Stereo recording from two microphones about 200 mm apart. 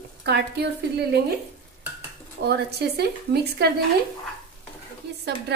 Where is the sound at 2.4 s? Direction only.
55° right (ahead or behind).